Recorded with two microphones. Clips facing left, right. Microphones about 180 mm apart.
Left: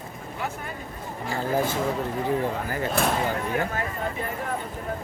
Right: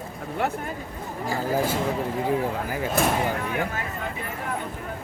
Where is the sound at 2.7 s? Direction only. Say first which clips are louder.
Even; 5° right (ahead or behind).